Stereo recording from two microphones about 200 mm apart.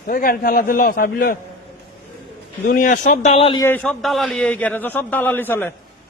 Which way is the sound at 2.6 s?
40° left (ahead or behind).